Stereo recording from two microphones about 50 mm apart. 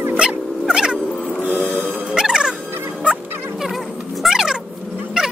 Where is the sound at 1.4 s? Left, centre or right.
Right.